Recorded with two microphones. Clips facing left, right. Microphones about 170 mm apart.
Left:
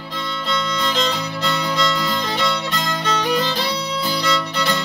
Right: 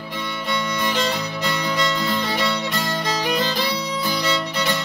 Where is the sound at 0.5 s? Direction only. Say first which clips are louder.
Left 1 dB; 15° right (ahead or behind).